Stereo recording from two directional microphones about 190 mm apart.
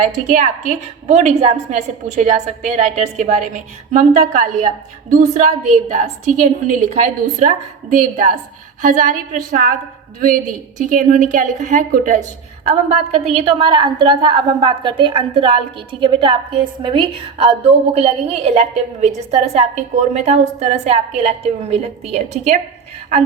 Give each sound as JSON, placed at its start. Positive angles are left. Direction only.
{"t": 0.0, "sound": "a woman's voice", "side_deg": -40}